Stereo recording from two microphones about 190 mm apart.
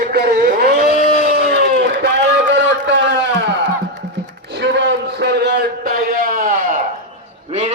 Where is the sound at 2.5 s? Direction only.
70° right (ahead or behind); by 7.7 s 35° right (ahead or behind).